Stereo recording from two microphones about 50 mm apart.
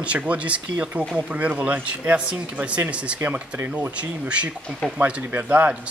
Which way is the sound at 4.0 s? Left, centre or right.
Right.